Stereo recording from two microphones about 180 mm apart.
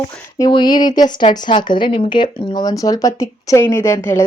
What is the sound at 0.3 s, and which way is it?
A woman's voice, 20° left (ahead or behind).